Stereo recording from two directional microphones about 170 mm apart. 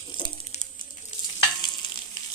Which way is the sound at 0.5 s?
40° left (ahead or behind).